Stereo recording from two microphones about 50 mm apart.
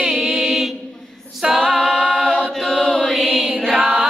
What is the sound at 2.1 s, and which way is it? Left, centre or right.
Choir, centre.